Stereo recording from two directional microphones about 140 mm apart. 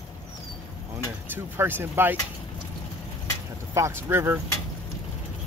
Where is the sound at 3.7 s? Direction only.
20° right (ahead or behind).